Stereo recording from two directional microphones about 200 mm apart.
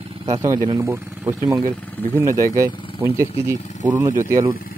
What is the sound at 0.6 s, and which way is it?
Speech, 15° right (ahead or behind).